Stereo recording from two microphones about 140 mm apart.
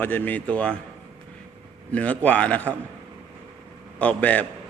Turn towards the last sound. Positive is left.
turn(degrees=10)  # may be behind; listen again after turning